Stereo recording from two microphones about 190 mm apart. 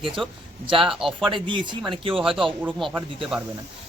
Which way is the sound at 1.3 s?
25° right (ahead or behind).